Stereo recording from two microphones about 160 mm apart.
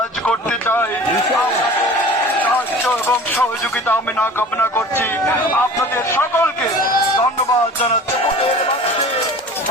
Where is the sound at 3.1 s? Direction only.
15° left (ahead or behind).